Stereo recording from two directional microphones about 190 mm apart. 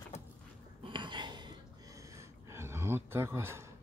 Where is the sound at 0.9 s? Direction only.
25° right (ahead or behind).